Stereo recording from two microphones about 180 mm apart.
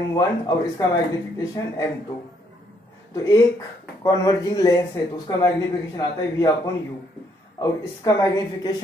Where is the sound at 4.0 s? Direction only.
20° left (ahead or behind).